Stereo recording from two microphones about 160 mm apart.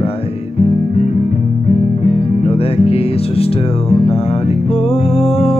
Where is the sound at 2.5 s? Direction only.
40° left (ahead or behind).